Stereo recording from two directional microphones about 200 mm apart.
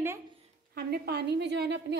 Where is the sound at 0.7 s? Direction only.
50° right (ahead or behind).